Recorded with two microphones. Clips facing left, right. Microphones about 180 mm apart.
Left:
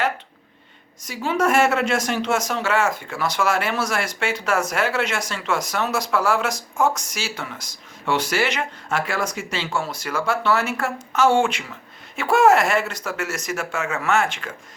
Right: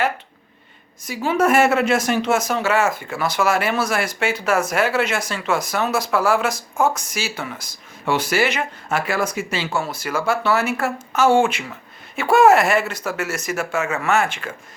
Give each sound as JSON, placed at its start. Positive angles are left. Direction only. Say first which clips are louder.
{"t": 1.0, "sound": "a man's voice", "louder": "right 3 dB", "side_deg": -5}